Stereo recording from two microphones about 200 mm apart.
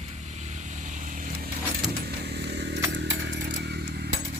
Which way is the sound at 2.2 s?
55° right (ahead or behind).